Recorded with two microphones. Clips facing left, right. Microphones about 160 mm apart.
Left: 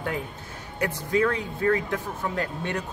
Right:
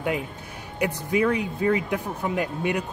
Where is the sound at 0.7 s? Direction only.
15° right (ahead or behind).